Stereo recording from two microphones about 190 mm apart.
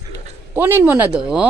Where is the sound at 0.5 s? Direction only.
10° right (ahead or behind).